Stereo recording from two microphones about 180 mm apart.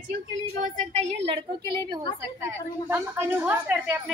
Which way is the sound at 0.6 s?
45° right (ahead or behind).